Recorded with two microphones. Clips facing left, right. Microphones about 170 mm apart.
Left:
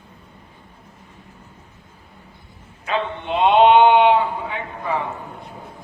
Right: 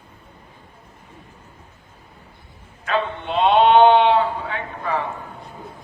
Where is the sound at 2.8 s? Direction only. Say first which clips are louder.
Right 1 dB; 15° left (ahead or behind).